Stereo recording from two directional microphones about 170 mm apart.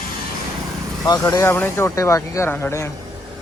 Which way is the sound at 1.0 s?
20° left (ahead or behind).